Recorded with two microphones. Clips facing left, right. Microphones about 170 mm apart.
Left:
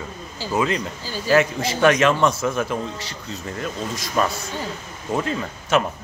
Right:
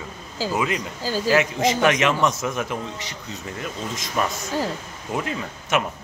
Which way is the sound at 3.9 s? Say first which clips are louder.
Left 3 dB; 20° right (ahead or behind).